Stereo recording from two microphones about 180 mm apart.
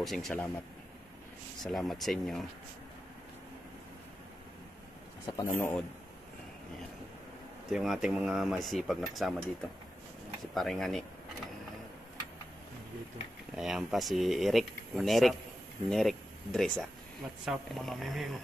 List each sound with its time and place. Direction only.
0.0 s speech: centre (ahead or behind)
1.6 s speech: centre (ahead or behind)
5.2 s speech: 15° left (ahead or behind)
7.7 s speech: centre (ahead or behind)
10.4 s speech: centre (ahead or behind)
13.6 s speech: centre (ahead or behind)